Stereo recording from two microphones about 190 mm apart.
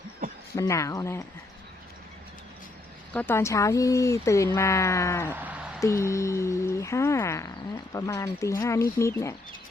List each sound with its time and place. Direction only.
0.5 s speech: 15° left (ahead or behind)
3.1 s speech: 10° left (ahead or behind)
5.3 s a sound: 10° right (ahead or behind)
5.8 s speech: 15° left (ahead or behind)